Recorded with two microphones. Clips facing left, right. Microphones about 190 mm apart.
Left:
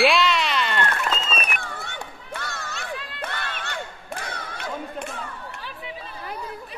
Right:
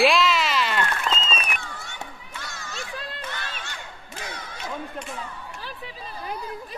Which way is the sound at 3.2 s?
60° left (ahead or behind).